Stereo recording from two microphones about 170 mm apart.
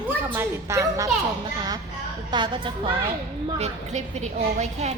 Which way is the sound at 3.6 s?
40° right (ahead or behind).